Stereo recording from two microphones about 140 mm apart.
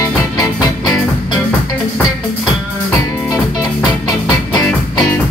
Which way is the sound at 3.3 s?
25° left (ahead or behind).